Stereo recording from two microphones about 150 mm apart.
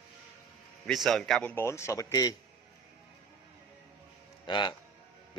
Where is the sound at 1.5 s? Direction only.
20° left (ahead or behind).